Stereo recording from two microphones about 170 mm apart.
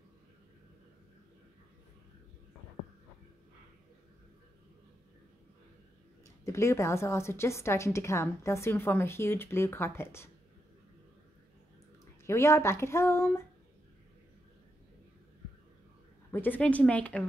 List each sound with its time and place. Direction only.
6.2 s a woman's voice: 15° left (ahead or behind)
12.3 s a woman's voice: 15° left (ahead or behind)
16.3 s a woman's voice: 10° left (ahead or behind)